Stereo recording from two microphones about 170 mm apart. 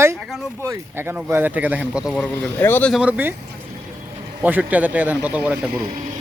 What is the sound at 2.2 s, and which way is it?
Speech, 10° left (ahead or behind).